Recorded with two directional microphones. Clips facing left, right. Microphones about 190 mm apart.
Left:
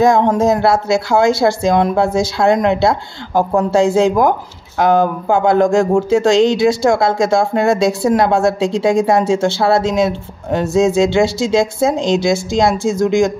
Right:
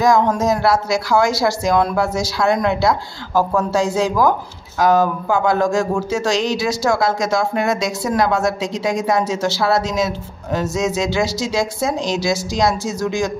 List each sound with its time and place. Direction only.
0.0 s speech: 25° left (ahead or behind)